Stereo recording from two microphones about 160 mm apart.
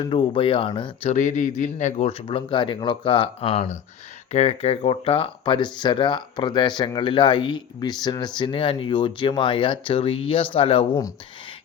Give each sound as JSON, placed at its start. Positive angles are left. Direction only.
{"t": 0.0, "sound": "speech", "side_deg": 30}
{"t": 1.1, "sound": "speech", "side_deg": 50}